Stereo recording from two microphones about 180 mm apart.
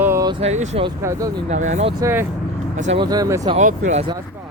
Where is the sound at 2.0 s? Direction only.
15° right (ahead or behind).